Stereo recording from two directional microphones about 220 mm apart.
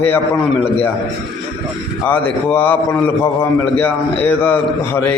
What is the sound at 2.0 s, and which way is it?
Speech, 5° left (ahead or behind).